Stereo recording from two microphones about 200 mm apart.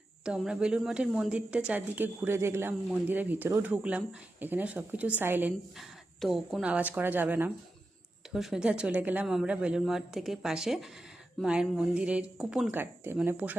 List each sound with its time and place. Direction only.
0.3 s speech: 5° right (ahead or behind)